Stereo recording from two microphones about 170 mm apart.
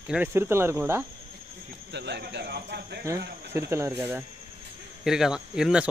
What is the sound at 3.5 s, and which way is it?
Speech, 15° right (ahead or behind).